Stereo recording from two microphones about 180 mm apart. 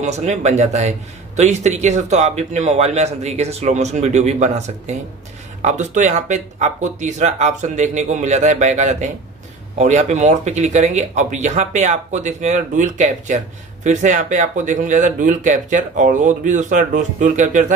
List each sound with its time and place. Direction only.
0.0 s a man's voice: 40° right (ahead or behind)